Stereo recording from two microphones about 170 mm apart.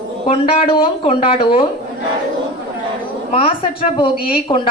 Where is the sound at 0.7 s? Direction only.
30° left (ahead or behind).